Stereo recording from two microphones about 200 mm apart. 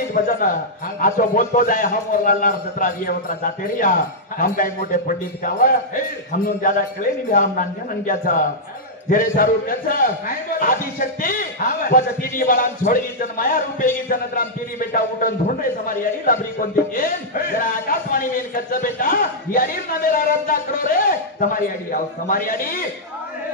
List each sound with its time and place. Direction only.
0.1 s a man's voice: 45° left (ahead or behind)
9.1 s a man's voice: 45° left (ahead or behind)